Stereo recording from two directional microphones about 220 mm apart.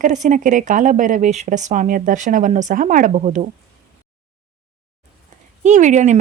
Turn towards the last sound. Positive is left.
turn(degrees=-35)  # may be behind; listen again after turning